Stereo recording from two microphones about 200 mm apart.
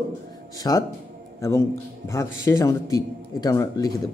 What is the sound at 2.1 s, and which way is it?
Speech, 15° left (ahead or behind).